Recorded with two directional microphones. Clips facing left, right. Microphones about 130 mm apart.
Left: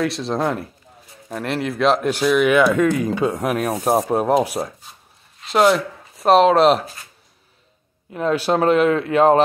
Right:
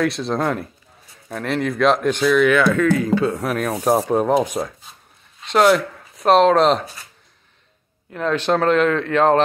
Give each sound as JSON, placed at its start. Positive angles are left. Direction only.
{"t": 0.0, "sound": "speech", "side_deg": 0}
{"t": 8.1, "sound": "speech", "side_deg": 10}